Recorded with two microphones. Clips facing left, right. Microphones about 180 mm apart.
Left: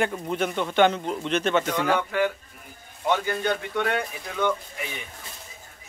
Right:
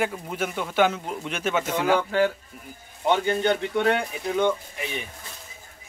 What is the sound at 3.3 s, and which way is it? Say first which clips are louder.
A man's voice: right 4 dB; 25° right (ahead or behind).